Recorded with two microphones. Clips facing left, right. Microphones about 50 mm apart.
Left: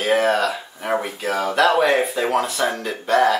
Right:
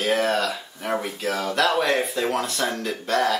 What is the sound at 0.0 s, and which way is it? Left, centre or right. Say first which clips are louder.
Speech: left 4 dB; centre.